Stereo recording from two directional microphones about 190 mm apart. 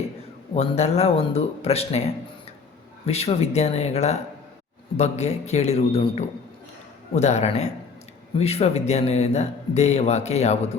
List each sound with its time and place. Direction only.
0.5 s speech: 35° left (ahead or behind)
3.1 s speech: 35° left (ahead or behind)